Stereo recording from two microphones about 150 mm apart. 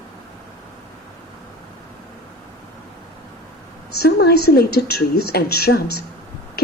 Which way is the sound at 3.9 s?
90° left.